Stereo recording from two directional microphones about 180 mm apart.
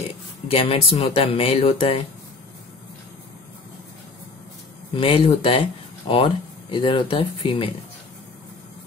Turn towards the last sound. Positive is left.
turn(degrees=30)  # may be behind; listen again after turning